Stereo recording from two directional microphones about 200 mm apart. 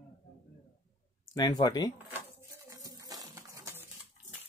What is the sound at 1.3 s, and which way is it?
Speech, 20° left (ahead or behind).